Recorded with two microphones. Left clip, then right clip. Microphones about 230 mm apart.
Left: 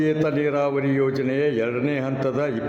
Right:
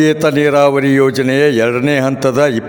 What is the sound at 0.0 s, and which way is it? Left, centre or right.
A man's voice, right.